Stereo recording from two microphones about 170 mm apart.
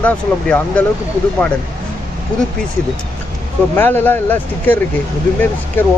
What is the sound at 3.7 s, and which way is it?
Speech, 10° left (ahead or behind).